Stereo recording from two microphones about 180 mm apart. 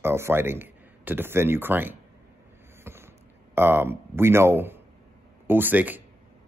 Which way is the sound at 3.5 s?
10° right (ahead or behind).